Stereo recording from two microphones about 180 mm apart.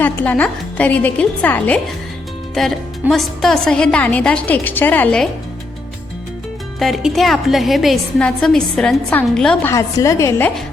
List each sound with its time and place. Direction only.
0.0 s a woman's voice: 10° left (ahead or behind)
6.7 s a woman's voice: centre (ahead or behind)
9.6 s a woman's voice: 15° left (ahead or behind)